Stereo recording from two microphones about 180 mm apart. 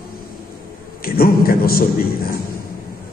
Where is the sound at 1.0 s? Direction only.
55° left (ahead or behind).